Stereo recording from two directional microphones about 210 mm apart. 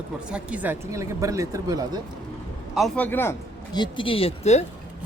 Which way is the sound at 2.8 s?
5° left (ahead or behind).